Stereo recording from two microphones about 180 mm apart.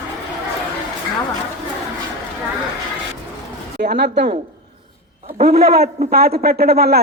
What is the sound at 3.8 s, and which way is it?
Speech, 70° right (ahead or behind).